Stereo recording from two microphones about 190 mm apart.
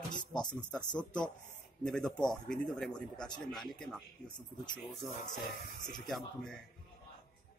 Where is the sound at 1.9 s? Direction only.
5° left (ahead or behind).